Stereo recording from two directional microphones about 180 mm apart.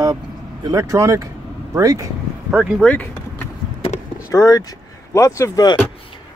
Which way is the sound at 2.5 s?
5° right (ahead or behind).